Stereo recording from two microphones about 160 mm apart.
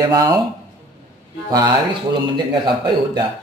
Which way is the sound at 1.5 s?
25° right (ahead or behind).